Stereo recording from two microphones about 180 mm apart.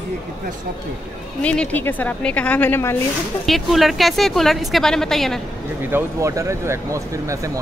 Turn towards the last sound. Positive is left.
turn(degrees=-15)  # may be behind; listen again after turning